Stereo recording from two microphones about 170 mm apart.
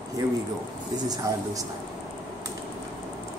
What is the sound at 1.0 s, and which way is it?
Speech, 20° right (ahead or behind).